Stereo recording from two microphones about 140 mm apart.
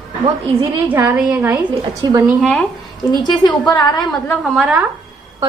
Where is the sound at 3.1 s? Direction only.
30° left (ahead or behind).